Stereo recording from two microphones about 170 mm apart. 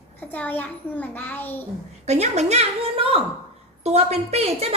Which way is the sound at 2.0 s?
40° right (ahead or behind).